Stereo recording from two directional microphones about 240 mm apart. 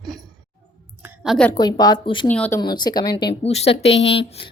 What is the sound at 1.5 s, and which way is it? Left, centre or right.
Speech, centre.